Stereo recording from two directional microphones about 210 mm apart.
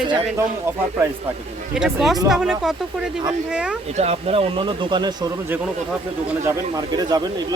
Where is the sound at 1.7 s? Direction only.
Centre (ahead or behind).